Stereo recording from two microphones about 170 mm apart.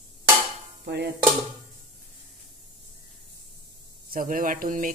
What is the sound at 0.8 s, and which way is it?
Dishes, 80° right.